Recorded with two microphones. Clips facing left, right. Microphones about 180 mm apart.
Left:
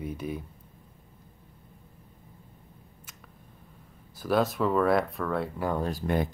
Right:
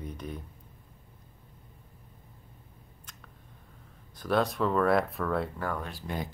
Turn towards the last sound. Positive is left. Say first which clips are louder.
# left 9 dB
turn(degrees=40)  # may be behind; listen again after turning